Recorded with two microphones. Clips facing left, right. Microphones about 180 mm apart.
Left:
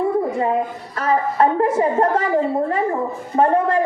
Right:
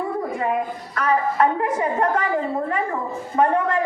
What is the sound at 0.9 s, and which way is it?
A child's voice, 30° left (ahead or behind).